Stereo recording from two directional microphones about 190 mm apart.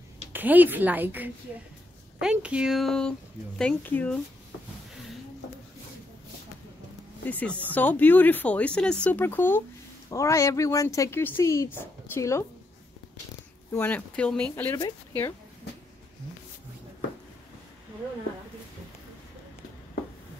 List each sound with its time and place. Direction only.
0.3 s a woman's voice: 10° right (ahead or behind); by 4.2 s 10° left (ahead or behind)
7.2 s speech: 10° left (ahead or behind)
13.7 s speech: 10° left (ahead or behind)